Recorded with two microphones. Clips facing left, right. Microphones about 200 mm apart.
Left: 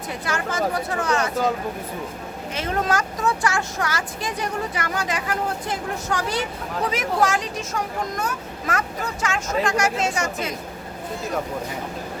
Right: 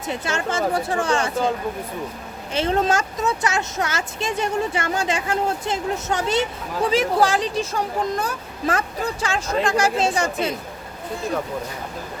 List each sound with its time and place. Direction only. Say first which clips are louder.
0.1 s speech: right 3 dB; 25° right (ahead or behind)
2.5 s speech: right 4 dB; 30° right (ahead or behind)